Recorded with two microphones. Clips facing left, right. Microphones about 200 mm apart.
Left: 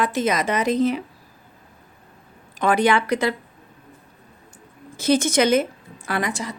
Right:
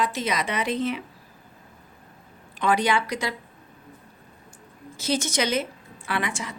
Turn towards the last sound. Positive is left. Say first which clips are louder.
# left 4 dB
turn(degrees=40)  # may be behind; listen again after turning